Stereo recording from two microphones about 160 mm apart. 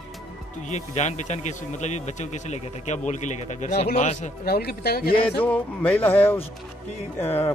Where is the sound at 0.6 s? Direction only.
45° left (ahead or behind).